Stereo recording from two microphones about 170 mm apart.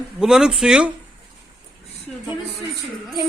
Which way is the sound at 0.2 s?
5° right (ahead or behind).